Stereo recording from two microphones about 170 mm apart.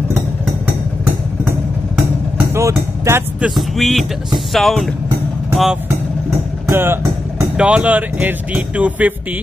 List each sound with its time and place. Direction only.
2.3 s speech: 15° right (ahead or behind); by 4.9 s centre (ahead or behind)
6.7 s speech: 15° right (ahead or behind)